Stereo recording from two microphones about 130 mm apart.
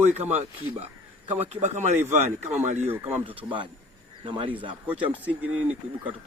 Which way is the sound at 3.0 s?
45° right (ahead or behind).